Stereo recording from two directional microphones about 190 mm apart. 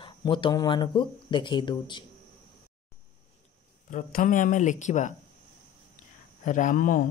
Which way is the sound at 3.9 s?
40° left (ahead or behind).